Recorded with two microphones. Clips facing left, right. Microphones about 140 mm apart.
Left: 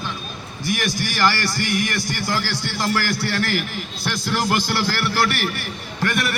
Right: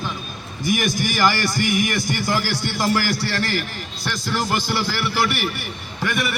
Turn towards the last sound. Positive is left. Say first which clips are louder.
# left 1 dB
turn(degrees=-5)  # may be behind; listen again after turning